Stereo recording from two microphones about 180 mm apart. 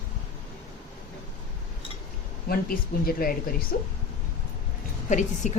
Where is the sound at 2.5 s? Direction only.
55° left (ahead or behind).